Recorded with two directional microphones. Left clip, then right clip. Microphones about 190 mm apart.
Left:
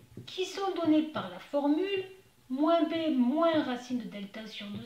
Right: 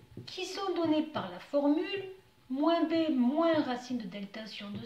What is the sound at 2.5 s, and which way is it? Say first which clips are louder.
A woman's voice: left 1 dB; 20° right (ahead or behind).